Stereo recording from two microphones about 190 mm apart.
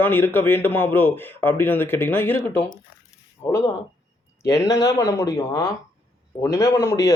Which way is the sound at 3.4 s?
20° left (ahead or behind).